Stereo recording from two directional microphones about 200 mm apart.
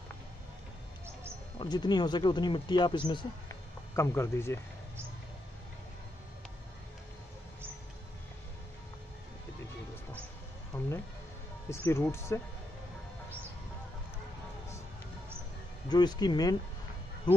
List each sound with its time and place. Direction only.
1.6 s speech: 20° left (ahead or behind)
10.7 s music: 10° left (ahead or behind)
11.7 s speech: 10° left (ahead or behind)
15.9 s speech: 20° left (ahead or behind)